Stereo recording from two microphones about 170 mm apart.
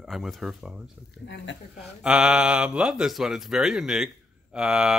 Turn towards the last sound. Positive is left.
turn(degrees=-5)  # may be behind; listen again after turning